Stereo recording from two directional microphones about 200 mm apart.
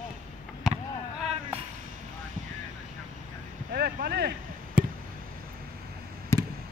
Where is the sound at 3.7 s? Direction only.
50° right (ahead or behind).